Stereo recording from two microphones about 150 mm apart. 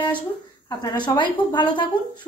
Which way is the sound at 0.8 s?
30° left (ahead or behind).